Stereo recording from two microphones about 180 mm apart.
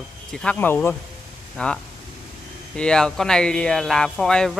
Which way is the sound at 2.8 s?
5° left (ahead or behind).